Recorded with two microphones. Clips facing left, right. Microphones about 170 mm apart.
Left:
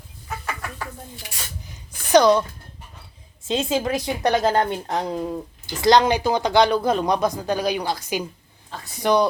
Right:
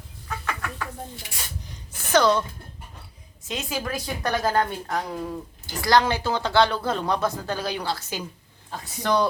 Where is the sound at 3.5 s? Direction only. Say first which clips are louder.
Left 8 dB; 25° left (ahead or behind).